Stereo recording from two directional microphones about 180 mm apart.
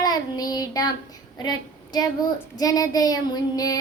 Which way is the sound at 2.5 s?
20° left (ahead or behind).